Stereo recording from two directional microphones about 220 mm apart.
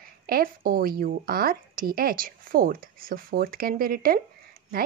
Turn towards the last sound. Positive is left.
turn(degrees=-40)  # may be behind; listen again after turning